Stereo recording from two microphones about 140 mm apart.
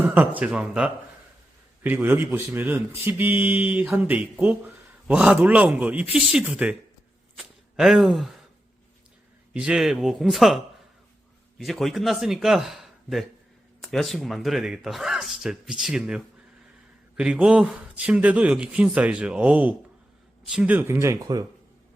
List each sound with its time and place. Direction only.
0.0 s speech: 10° right (ahead or behind)
7.3 s a sound: centre (ahead or behind)
9.5 s speech: 5° right (ahead or behind); by 21.4 s 25° right (ahead or behind)